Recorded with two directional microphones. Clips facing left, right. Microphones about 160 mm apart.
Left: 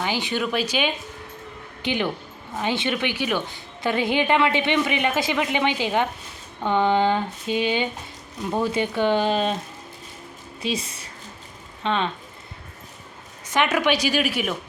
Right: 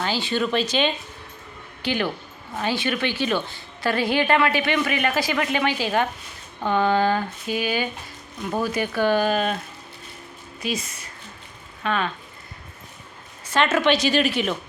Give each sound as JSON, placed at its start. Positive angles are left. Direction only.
{"t": 0.0, "sound": "a woman's voice", "side_deg": 15}
{"t": 10.6, "sound": "a woman's voice", "side_deg": 30}
{"t": 13.4, "sound": "a woman's voice", "side_deg": 15}